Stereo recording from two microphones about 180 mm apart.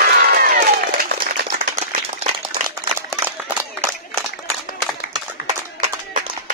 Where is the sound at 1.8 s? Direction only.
35° right (ahead or behind).